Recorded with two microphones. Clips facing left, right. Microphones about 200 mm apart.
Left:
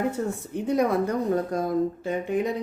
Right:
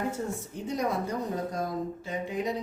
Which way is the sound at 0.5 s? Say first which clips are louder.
Left 8 dB; 60° left (ahead or behind).